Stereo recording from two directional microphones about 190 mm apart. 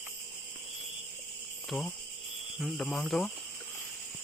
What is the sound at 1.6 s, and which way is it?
Cricket, 5° left (ahead or behind).